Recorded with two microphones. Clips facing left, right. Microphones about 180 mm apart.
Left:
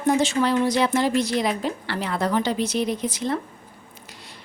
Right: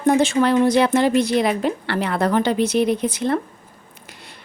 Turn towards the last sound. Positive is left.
turn(degrees=-60)  # may be behind; listen again after turning